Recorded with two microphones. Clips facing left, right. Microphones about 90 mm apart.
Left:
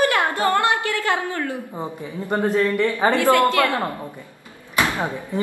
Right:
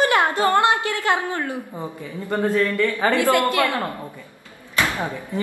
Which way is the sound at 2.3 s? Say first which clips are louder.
Left 1 dB; 20° left (ahead or behind).